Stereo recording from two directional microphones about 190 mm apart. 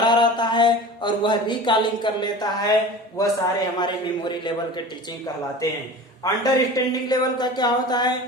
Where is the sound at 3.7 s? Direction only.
25° left (ahead or behind).